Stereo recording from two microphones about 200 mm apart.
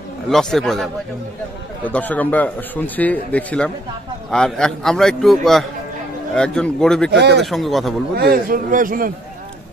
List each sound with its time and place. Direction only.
0.3 s a man's voice: centre (ahead or behind)
1.9 s a man's voice: 10° left (ahead or behind)
7.1 s speech: 55° right (ahead or behind)
7.4 s a man's voice: centre (ahead or behind)
8.2 s a man's voice: 45° right (ahead or behind)